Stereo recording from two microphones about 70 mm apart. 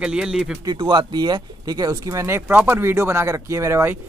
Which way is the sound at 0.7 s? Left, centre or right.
Right.